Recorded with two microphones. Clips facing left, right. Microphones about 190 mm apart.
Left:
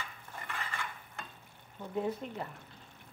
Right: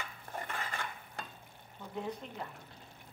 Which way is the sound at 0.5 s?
35° right (ahead or behind).